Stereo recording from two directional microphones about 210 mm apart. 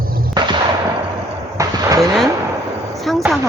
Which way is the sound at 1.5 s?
15° right (ahead or behind).